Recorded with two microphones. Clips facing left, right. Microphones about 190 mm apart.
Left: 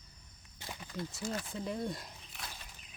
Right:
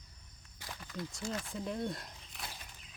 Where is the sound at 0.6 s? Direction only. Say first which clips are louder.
Left 2 dB; 25° left (ahead or behind).